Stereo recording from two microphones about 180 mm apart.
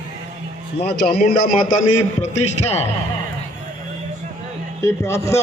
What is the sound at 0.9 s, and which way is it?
Speech, 55° left (ahead or behind).